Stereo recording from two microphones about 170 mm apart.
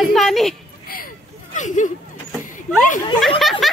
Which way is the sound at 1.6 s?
45° left (ahead or behind).